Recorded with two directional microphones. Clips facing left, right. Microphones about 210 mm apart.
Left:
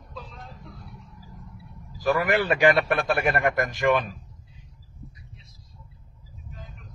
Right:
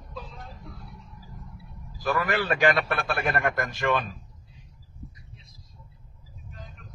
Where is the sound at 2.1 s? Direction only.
15° left (ahead or behind).